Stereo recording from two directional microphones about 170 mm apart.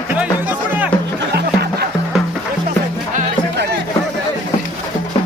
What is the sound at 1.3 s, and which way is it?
Music, 70° right (ahead or behind).